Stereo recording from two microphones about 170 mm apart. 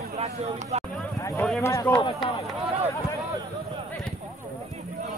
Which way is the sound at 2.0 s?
30° left (ahead or behind).